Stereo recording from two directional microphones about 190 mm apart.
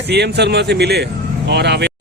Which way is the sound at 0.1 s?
60° right (ahead or behind).